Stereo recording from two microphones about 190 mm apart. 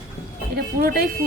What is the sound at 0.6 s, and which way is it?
Speech, 55° right (ahead or behind).